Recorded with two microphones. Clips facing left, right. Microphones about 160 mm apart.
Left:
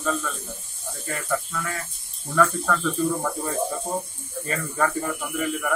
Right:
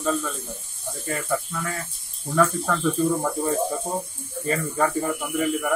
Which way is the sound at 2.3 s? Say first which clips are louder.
Even; 15° right (ahead or behind).